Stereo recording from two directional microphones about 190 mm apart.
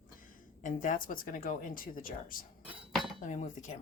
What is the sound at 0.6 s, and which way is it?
Speech, 45° left (ahead or behind).